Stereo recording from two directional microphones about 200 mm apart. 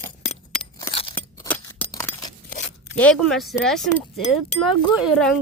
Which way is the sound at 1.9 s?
20° left (ahead or behind).